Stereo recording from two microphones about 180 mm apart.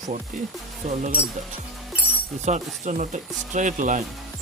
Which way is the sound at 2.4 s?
40° right (ahead or behind).